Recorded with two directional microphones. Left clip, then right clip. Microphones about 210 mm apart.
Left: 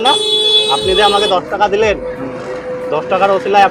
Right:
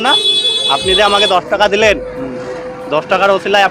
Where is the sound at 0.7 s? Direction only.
25° right (ahead or behind).